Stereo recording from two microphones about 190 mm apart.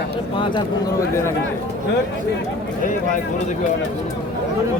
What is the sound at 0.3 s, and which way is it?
Speech, 25° left (ahead or behind).